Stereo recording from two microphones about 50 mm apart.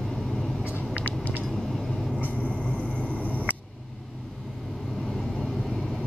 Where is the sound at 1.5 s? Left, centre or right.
Centre.